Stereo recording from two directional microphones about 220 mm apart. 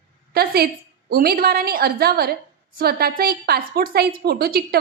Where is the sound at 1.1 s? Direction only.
45° right (ahead or behind).